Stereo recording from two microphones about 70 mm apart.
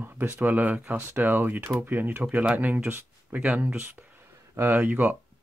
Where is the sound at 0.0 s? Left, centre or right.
Right.